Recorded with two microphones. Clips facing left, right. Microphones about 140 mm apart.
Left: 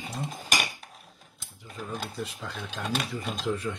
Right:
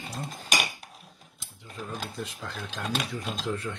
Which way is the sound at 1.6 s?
10° left (ahead or behind).